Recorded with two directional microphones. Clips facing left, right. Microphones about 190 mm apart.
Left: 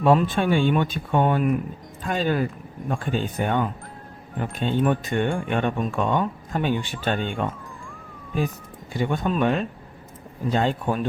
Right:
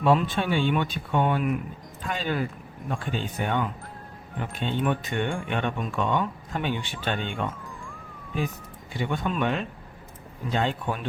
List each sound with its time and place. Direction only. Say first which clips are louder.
0.0 s speech: left 4 dB; 45° left (ahead or behind)
8.9 s speech: left 4 dB; 45° left (ahead or behind)